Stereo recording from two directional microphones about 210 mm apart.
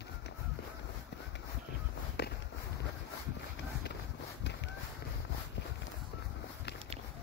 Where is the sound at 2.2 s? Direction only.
50° left (ahead or behind).